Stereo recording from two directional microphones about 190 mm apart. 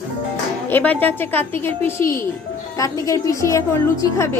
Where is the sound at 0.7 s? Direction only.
10° left (ahead or behind).